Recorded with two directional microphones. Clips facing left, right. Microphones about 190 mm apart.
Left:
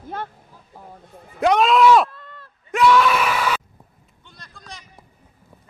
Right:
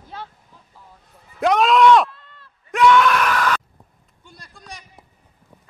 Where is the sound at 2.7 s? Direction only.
Centre (ahead or behind).